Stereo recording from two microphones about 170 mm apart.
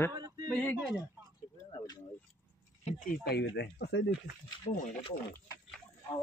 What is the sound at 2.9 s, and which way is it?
Speech, 60° left (ahead or behind).